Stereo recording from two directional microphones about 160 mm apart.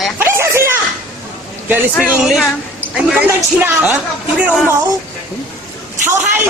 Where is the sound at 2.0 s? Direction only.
5° right (ahead or behind).